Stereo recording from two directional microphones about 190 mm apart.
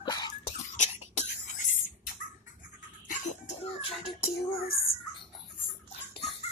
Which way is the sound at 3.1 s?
40° left (ahead or behind).